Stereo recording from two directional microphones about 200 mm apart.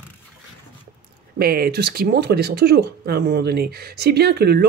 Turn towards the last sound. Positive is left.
turn(degrees=-50)  # may be behind; listen again after turning